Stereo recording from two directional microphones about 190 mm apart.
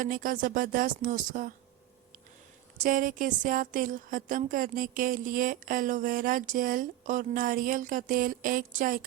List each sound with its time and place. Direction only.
0.0 s a woman's voice: 45° right (ahead or behind)
2.8 s a woman's voice: 45° right (ahead or behind)